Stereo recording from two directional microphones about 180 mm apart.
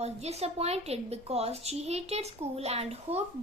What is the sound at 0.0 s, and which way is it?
Speech, 35° right (ahead or behind).